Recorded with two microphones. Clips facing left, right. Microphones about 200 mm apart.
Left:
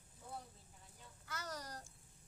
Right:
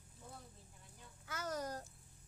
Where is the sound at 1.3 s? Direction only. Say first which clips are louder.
Right 6 dB; 50° right (ahead or behind).